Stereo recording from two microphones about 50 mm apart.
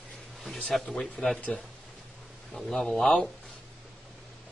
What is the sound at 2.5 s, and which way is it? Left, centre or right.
Speech, centre.